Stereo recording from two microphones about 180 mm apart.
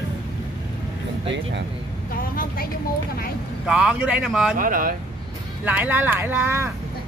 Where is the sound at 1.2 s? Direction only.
80° right.